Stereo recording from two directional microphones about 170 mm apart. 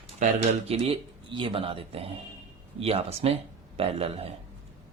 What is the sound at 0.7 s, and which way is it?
A man's voice, 35° right (ahead or behind).